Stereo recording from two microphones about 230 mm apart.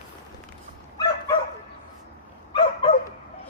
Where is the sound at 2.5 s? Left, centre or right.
Left.